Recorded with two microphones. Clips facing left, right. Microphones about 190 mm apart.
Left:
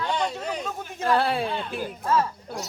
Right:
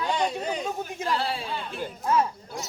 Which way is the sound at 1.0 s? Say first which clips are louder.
Left 7 dB; 55° left (ahead or behind).